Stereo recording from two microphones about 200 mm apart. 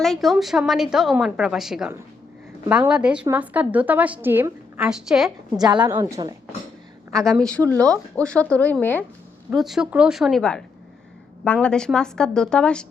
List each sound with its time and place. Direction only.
0.0 s a woman's voice: centre (ahead or behind)
5.5 s a woman's voice: 20° right (ahead or behind)
7.3 s a woman's voice: 5° left (ahead or behind)